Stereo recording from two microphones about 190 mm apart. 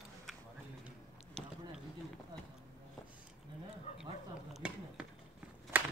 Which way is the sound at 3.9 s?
35° left (ahead or behind).